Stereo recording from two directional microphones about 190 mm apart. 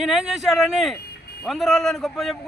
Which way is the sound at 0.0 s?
5° right (ahead or behind).